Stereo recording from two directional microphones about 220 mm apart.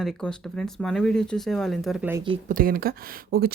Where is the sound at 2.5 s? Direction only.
40° right (ahead or behind).